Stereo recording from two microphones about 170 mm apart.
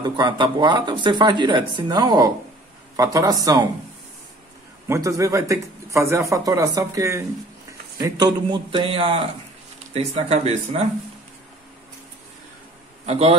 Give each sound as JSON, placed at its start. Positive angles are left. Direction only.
{"t": 0.0, "sound": "speech", "side_deg": -25}
{"t": 4.8, "sound": "a man's voice", "side_deg": -15}
{"t": 13.0, "sound": "a man's voice", "side_deg": -40}